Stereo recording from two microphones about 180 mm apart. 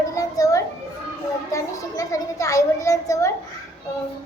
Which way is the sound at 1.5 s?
20° left (ahead or behind).